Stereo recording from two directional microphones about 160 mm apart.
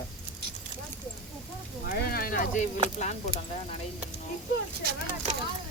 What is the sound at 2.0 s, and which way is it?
Speech, 65° left (ahead or behind).